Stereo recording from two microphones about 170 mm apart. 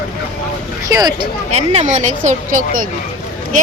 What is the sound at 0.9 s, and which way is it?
Speech, 20° right (ahead or behind).